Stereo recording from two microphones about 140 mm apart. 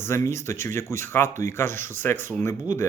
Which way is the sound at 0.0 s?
20° left (ahead or behind).